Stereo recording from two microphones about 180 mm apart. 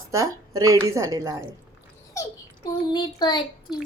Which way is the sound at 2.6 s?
25° left (ahead or behind).